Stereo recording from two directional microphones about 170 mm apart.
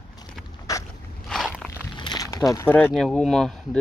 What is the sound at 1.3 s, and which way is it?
Walk, centre (ahead or behind).